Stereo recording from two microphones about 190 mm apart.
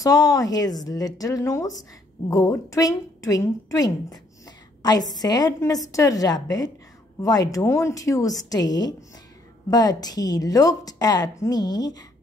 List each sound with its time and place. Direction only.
0.0 s a woman's voice: 20° left (ahead or behind)